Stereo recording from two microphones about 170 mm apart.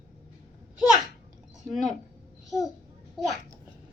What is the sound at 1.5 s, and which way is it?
Speech, centre (ahead or behind).